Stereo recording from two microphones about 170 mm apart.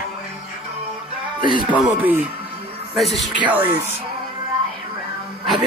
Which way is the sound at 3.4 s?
10° right (ahead or behind).